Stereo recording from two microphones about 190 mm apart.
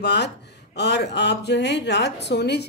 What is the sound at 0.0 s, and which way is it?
Speech, 60° left (ahead or behind).